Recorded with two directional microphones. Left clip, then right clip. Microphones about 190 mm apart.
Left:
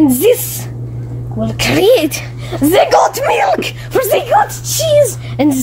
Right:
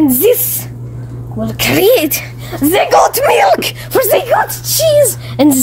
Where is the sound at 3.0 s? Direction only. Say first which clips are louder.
Right 3 dB; 40° right (ahead or behind).